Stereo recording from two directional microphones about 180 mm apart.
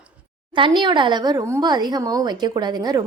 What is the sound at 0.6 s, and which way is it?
Speech, 25° right (ahead or behind).